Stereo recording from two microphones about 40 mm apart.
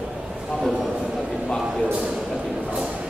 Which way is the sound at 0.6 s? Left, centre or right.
Centre.